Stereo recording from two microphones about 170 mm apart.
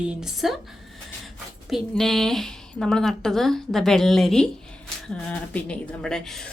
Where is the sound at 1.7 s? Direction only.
Centre (ahead or behind).